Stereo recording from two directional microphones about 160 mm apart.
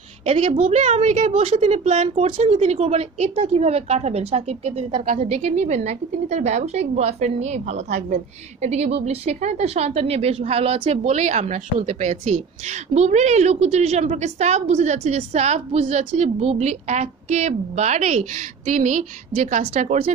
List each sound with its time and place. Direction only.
0.2 s a woman's voice: 40° right (ahead or behind)
5.0 s a woman's voice: 50° right (ahead or behind)